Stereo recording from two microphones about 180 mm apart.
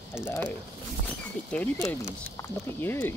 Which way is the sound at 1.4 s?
5° left (ahead or behind).